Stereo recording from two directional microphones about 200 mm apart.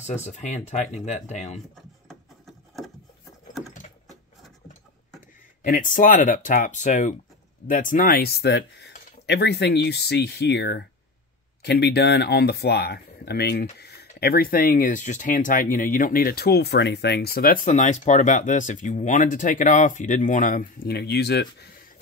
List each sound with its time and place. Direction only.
0.0 s speech: 35° left (ahead or behind)
1.8 s a sound: centre (ahead or behind)
5.6 s speech: 40° left (ahead or behind)